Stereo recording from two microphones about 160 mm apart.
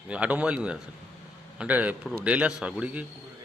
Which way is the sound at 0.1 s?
10° right (ahead or behind).